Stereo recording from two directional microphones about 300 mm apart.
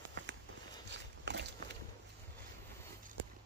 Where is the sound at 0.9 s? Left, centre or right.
Right.